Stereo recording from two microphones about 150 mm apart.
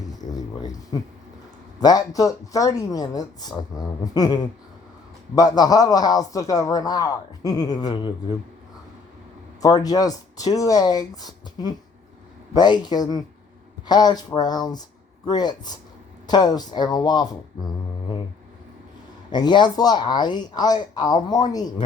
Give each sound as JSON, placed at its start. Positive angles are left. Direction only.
{"t": 0.0, "sound": "a sound", "side_deg": 25}
{"t": 1.8, "sound": "a man's voice", "side_deg": 25}
{"t": 9.6, "sound": "a man's voice", "side_deg": 25}
{"t": 19.3, "sound": "a man's voice", "side_deg": 30}